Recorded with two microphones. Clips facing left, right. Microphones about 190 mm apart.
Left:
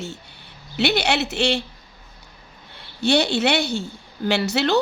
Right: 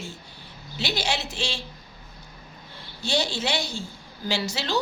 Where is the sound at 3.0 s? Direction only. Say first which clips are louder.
Left 8 dB; 65° left (ahead or behind).